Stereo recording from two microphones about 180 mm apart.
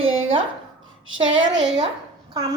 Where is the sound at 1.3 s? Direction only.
90° right.